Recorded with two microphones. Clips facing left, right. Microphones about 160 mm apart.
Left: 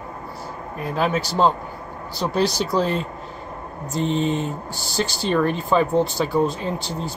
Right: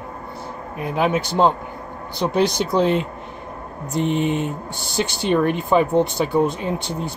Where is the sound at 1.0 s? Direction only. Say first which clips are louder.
Right 2 dB; 15° right (ahead or behind).